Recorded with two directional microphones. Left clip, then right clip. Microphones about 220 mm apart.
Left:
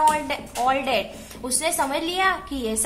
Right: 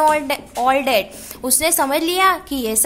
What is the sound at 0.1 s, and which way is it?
A woman's voice, 45° right (ahead or behind).